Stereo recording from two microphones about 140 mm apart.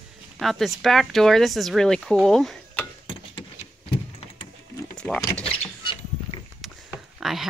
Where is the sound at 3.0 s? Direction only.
35° left (ahead or behind).